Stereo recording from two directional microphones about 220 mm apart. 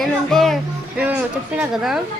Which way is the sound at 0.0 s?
Centre (ahead or behind).